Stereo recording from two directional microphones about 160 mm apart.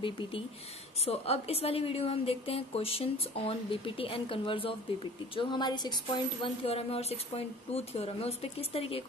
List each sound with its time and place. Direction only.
1.0 s a woman's voice: 40° left (ahead or behind)